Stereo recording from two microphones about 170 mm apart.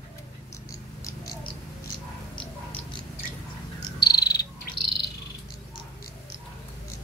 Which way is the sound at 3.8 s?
25° left (ahead or behind).